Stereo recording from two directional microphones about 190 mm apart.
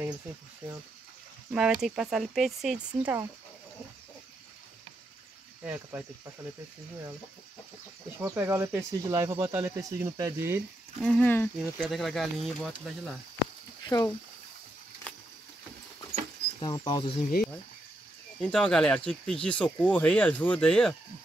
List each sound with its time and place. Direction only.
1.5 s speech: 5° right (ahead or behind)
5.6 s speech: 5° right (ahead or behind)
8.2 s speech: 15° right (ahead or behind)
11.0 s speech: 10° left (ahead or behind)
13.8 s speech: 20° left (ahead or behind)
15.1 s a sound: 10° left (ahead or behind)
16.6 s speech: 25° left (ahead or behind)
18.4 s speech: 5° left (ahead or behind)